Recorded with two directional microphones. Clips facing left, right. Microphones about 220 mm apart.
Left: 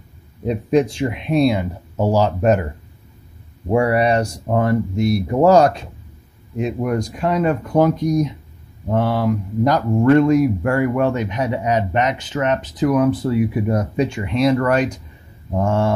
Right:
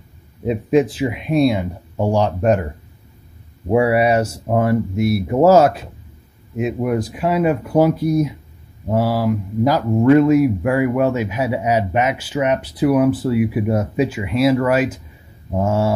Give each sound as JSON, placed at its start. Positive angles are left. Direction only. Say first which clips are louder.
{"t": 0.5, "sound": "speech", "louder": "right 1 dB", "side_deg": -5}
{"t": 9.8, "sound": "speech", "louder": "right 2 dB", "side_deg": -20}
{"t": 10.1, "sound": "speech", "louder": "right 2 dB", "side_deg": -5}